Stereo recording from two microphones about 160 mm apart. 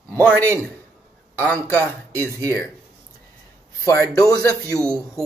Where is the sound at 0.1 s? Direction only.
10° left (ahead or behind).